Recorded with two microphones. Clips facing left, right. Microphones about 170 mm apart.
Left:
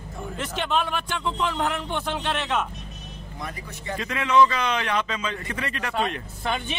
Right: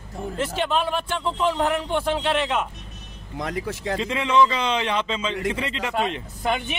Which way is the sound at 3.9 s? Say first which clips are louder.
Even; 25° right (ahead or behind).